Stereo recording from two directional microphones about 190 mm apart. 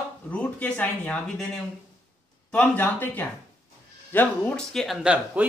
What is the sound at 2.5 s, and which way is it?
Speech, 10° left (ahead or behind).